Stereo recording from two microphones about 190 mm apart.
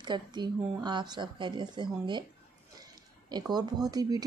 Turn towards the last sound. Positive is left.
turn(degrees=-20)  # may be behind; listen again after turning